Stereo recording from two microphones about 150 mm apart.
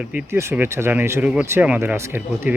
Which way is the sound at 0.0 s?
10° right (ahead or behind).